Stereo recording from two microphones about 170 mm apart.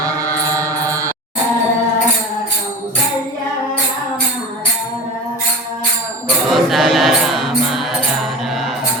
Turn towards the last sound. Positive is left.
turn(degrees=0)  # may be behind; listen again after turning